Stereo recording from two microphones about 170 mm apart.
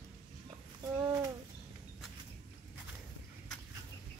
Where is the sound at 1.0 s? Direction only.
20° right (ahead or behind).